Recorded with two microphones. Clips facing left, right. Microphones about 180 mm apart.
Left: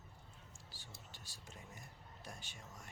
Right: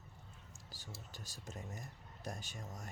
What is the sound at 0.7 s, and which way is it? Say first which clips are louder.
Speech: right 7 dB; 40° right (ahead or behind).